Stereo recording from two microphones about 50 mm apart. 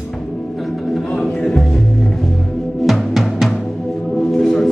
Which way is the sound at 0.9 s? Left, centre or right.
Centre.